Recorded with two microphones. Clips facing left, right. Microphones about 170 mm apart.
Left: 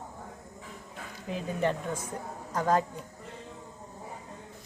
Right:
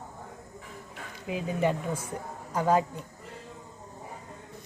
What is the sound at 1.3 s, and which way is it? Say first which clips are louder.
Speech: right 2 dB; 10° right (ahead or behind).